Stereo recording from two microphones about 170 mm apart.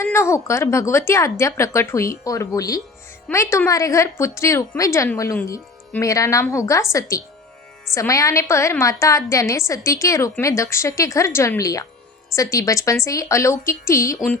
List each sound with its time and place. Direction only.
0.0 s a woman's voice: 15° left (ahead or behind)